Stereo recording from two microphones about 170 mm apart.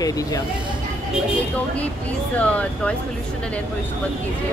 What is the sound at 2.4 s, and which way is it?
Speech, 10° left (ahead or behind).